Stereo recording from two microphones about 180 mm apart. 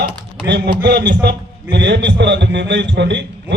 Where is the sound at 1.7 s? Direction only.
75° right (ahead or behind).